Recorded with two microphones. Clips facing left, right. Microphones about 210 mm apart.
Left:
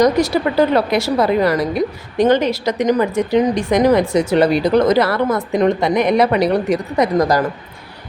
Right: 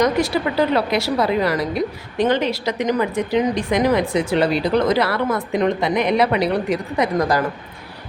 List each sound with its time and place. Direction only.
0.0 s a woman's voice: 40° left (ahead or behind)